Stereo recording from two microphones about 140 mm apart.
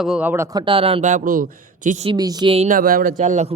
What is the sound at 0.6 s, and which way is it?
Speech, 40° right (ahead or behind).